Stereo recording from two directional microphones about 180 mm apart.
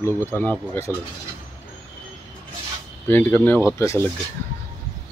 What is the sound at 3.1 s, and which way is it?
Speech, 10° left (ahead or behind).